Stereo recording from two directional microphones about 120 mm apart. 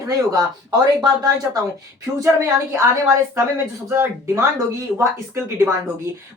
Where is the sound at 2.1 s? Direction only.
25° right (ahead or behind).